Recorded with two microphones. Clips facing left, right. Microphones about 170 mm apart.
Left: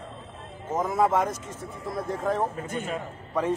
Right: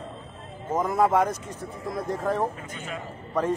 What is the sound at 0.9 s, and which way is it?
Speech, centre (ahead or behind).